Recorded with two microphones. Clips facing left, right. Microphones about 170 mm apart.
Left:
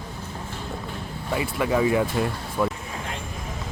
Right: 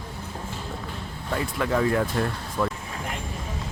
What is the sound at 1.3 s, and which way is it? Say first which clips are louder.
Speech: left 2 dB; 5° left (ahead or behind).